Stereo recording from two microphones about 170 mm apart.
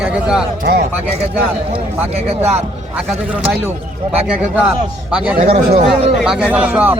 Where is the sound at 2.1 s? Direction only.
40° right (ahead or behind).